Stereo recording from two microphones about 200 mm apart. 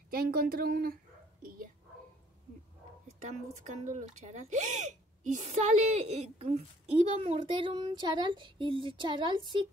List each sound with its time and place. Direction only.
0.1 s speech: 50° right (ahead or behind)
1.4 s a sound: 45° right (ahead or behind)
3.2 s speech: 35° right (ahead or behind)